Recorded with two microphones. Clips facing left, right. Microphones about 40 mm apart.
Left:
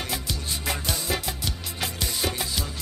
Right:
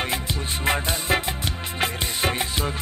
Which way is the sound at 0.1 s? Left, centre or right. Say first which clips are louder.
Right 4 dB; right.